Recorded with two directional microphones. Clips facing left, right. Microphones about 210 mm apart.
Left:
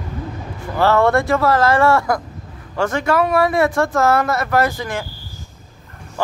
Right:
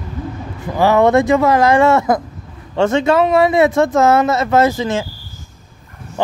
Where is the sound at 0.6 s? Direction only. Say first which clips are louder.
Right 3 dB; 15° right (ahead or behind).